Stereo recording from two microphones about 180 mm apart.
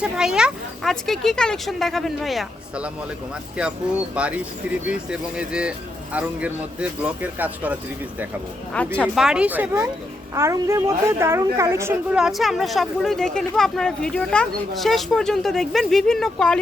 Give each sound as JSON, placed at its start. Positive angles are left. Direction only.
{"t": 0.0, "sound": "speech", "side_deg": -5}
{"t": 8.7, "sound": "speech", "side_deg": 5}
{"t": 12.1, "sound": "speech", "side_deg": 0}